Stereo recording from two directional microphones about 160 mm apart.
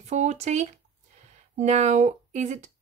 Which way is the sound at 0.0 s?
45° right (ahead or behind).